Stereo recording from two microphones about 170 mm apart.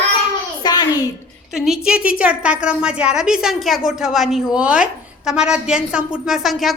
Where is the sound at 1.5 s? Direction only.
Centre (ahead or behind).